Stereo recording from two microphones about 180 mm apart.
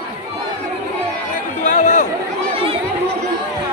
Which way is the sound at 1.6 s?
45° left (ahead or behind).